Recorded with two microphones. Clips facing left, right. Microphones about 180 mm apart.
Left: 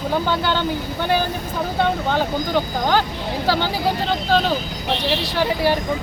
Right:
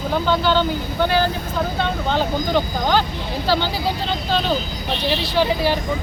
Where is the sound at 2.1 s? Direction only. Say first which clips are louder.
Right 1 dB; 15° left (ahead or behind).